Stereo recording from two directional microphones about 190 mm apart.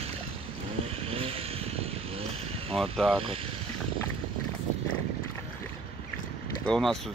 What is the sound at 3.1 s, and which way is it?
Speech, 30° right (ahead or behind).